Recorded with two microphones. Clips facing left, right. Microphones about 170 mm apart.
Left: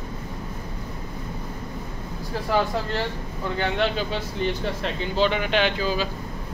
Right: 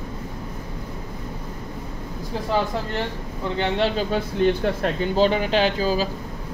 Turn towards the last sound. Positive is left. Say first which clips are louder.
# right 3 dB
turn(degrees=-40)  # may be behind; listen again after turning